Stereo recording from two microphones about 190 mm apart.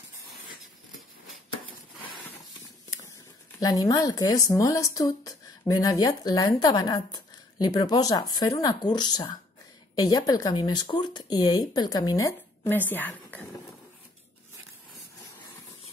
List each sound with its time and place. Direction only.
3.5 s speech: 20° left (ahead or behind)